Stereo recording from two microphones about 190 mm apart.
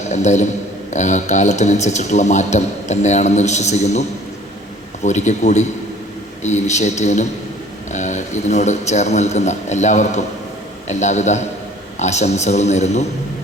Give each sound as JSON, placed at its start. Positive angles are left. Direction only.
{"t": 0.1, "sound": "a man's voice", "side_deg": 35}
{"t": 5.0, "sound": "a man's voice", "side_deg": 40}